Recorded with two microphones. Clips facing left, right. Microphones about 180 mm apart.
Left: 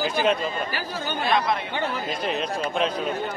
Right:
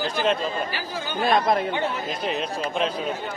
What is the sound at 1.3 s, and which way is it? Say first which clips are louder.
Speech: right 3 dB; 45° right (ahead or behind).